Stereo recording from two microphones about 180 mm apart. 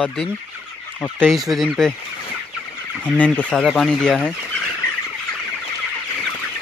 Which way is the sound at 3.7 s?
Centre (ahead or behind).